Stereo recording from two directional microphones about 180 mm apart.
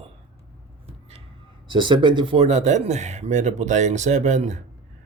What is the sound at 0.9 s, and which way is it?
Vehicle, 35° right (ahead or behind).